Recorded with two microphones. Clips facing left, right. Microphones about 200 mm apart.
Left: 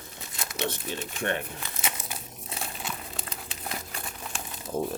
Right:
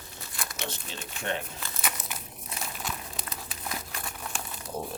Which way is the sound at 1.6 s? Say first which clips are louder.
Even; 25° left (ahead or behind).